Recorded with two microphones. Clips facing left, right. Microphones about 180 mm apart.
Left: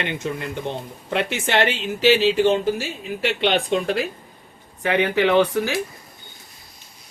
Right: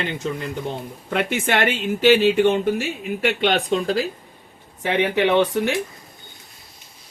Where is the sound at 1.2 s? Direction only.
55° right (ahead or behind); by 4.0 s 40° right (ahead or behind).